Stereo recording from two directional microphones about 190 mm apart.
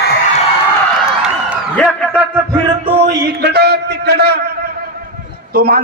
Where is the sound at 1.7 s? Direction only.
5° left (ahead or behind).